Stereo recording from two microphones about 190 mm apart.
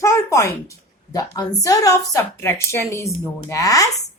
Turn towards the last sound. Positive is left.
turn(degrees=20)  # may be behind; listen again after turning